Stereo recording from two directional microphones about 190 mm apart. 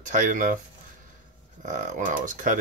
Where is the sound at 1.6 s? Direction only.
45° right (ahead or behind).